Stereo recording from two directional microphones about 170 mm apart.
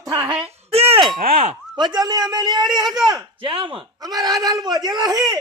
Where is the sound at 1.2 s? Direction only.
55° right (ahead or behind).